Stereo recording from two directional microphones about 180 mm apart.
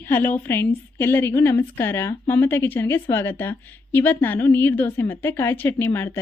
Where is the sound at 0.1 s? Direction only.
10° left (ahead or behind).